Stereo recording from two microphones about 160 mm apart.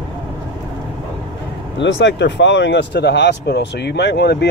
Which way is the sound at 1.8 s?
90° left.